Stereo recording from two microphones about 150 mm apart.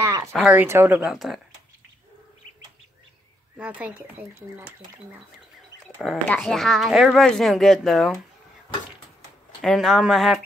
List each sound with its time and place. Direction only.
0.0 s a sound: 20° right (ahead or behind)
0.3 s speech: 5° right (ahead or behind)
3.5 s speech: 10° right (ahead or behind)
6.2 s speech: 10° left (ahead or behind)
9.6 s speech: centre (ahead or behind)